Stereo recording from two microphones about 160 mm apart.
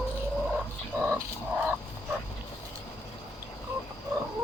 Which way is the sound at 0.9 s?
15° right (ahead or behind).